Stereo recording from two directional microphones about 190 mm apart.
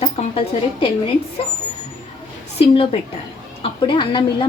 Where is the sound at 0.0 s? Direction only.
30° left (ahead or behind).